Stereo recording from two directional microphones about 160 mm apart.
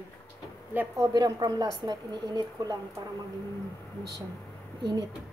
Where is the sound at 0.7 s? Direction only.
15° right (ahead or behind).